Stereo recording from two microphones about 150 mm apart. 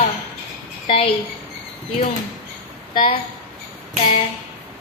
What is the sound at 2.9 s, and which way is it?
Speech, 30° left (ahead or behind).